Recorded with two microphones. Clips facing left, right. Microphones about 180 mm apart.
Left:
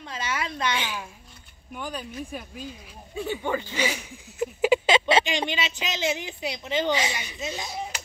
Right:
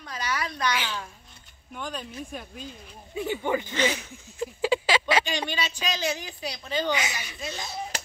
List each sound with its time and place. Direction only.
0.0 s a sound: 25° left (ahead or behind)
1.7 s speech: 5° left (ahead or behind)
3.2 s speech: 15° right (ahead or behind)
3.7 s speech: 10° left (ahead or behind)
4.4 s speech: 20° left (ahead or behind)